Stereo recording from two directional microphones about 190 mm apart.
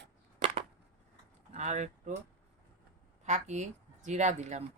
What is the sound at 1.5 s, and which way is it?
Speech, 40° right (ahead or behind).